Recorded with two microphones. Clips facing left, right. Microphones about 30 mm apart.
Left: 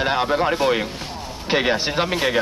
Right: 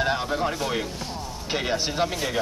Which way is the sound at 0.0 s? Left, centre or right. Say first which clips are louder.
Left 5 dB; left.